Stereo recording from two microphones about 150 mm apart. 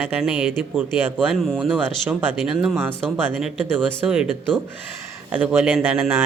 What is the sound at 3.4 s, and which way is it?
Speech, 5° right (ahead or behind).